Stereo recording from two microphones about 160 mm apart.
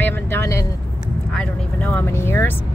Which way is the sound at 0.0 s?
15° left (ahead or behind).